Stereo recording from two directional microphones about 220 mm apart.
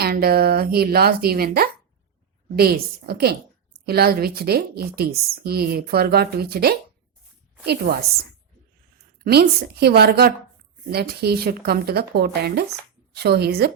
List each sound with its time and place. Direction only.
0.0 s speech: 45° right (ahead or behind)
9.1 s speech: 45° right (ahead or behind)